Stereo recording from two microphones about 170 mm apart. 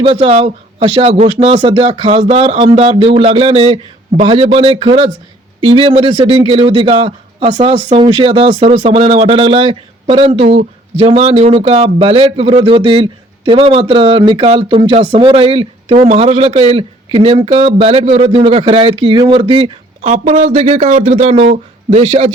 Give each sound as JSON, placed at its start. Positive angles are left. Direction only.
{"t": 0.0, "sound": "speech", "side_deg": -30}
{"t": 20.1, "sound": "speech", "side_deg": -45}